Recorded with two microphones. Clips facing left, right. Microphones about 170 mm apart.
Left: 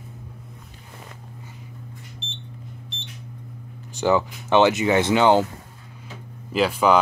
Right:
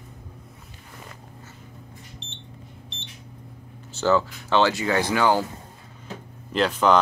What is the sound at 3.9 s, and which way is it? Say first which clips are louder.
Speech: left 1 dB; 15° left (ahead or behind).